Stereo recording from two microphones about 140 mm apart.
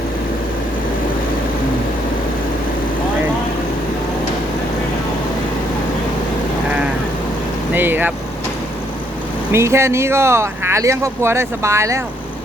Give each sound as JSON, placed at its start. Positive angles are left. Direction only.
{"t": 7.7, "sound": "vehicle", "side_deg": -15}
{"t": 9.5, "sound": "speech", "side_deg": -20}